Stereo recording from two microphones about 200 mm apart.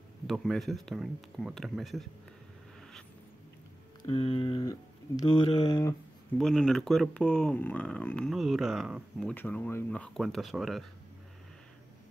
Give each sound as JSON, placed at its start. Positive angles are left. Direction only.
{"t": 0.3, "sound": "speech", "side_deg": 0}
{"t": 4.0, "sound": "speech", "side_deg": 25}
{"t": 6.3, "sound": "speech", "side_deg": 0}
{"t": 9.3, "sound": "speech", "side_deg": 10}